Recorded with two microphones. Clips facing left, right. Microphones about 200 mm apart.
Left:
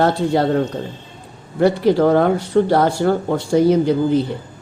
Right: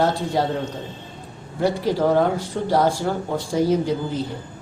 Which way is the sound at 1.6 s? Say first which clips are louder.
Left 6 dB; 65° left (ahead or behind).